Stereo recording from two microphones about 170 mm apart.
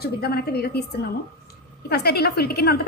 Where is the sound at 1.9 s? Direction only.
65° left (ahead or behind).